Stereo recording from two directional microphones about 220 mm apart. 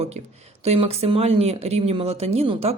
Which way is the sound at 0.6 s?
30° right (ahead or behind).